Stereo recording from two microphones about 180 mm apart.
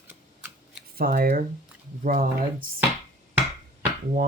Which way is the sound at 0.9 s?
55° right (ahead or behind).